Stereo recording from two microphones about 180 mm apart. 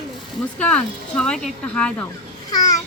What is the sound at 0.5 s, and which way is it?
Speech, 5° left (ahead or behind).